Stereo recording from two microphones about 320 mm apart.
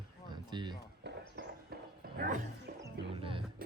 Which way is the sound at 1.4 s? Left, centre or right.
Right.